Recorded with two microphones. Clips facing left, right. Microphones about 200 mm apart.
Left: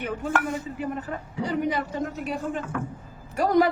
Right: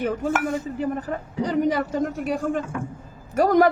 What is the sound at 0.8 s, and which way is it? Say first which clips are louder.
A man's voice: right 4 dB; 40° right (ahead or behind).